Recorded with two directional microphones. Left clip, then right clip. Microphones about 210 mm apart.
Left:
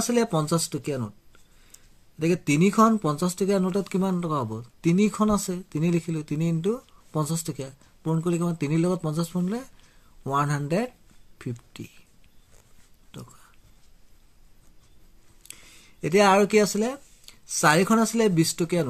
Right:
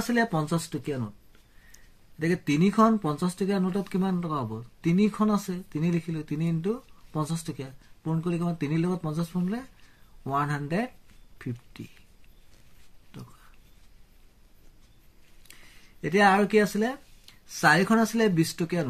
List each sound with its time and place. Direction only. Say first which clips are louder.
0.0 s speech: left 2 dB; 30° left (ahead or behind)
2.1 s speech: left 3 dB; 35° left (ahead or behind)
16.0 s speech: left 3 dB; 35° left (ahead or behind)